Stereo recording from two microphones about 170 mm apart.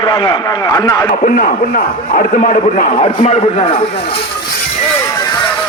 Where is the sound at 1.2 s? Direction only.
55° left (ahead or behind); by 3.8 s 40° left (ahead or behind).